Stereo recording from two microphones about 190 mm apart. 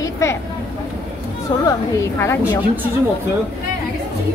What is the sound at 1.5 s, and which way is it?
A woman's voice, 20° left (ahead or behind).